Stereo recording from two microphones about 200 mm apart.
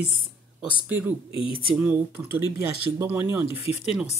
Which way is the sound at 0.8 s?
10° right (ahead or behind).